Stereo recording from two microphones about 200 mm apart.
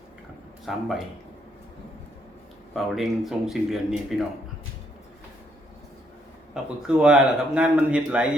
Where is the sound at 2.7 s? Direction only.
Centre (ahead or behind).